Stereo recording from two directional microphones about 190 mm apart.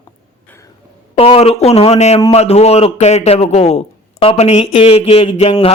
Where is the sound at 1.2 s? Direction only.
30° left (ahead or behind).